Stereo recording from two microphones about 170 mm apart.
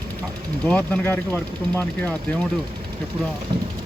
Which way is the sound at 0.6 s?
10° left (ahead or behind).